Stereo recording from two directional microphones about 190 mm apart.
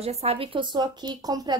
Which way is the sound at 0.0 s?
30° right (ahead or behind).